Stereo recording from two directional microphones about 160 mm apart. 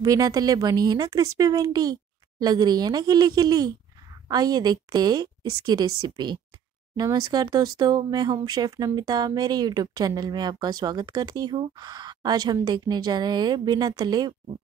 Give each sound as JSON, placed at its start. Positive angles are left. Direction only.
{"t": 0.0, "sound": "speech", "side_deg": -20}